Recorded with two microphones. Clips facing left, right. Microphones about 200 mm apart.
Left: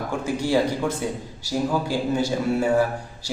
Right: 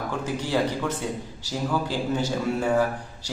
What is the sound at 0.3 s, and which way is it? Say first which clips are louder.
A man's voice: left 4 dB; 10° left (ahead or behind).